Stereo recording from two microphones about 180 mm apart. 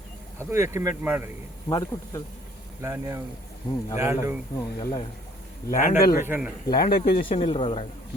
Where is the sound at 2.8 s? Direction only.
15° right (ahead or behind).